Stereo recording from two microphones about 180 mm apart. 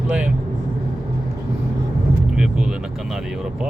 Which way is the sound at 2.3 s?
5° right (ahead or behind).